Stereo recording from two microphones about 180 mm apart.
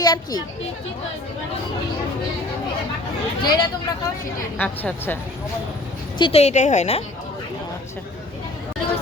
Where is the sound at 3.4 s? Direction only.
25° left (ahead or behind).